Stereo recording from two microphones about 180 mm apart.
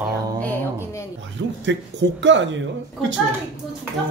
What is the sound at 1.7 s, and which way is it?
Speech, 85° right.